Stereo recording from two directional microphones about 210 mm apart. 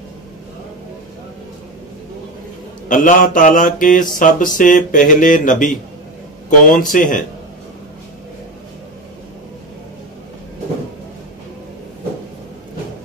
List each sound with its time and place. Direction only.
2.9 s mantra: 40° left (ahead or behind)